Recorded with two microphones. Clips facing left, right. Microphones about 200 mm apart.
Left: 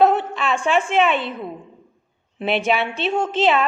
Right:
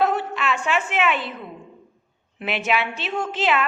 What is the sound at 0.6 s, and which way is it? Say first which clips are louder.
Speech: left 7 dB; 30° left (ahead or behind).